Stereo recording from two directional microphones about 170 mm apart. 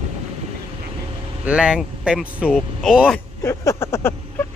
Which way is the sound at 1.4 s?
5° right (ahead or behind).